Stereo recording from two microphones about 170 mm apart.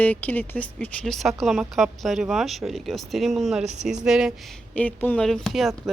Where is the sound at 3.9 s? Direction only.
5° right (ahead or behind).